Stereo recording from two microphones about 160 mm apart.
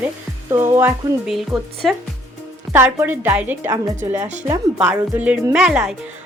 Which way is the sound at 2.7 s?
15° right (ahead or behind).